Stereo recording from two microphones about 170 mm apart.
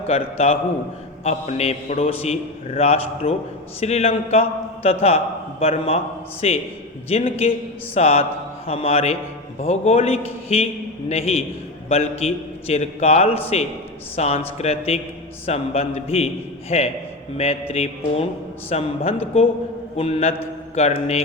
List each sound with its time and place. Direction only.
0.1 s a man's voice: 35° left (ahead or behind)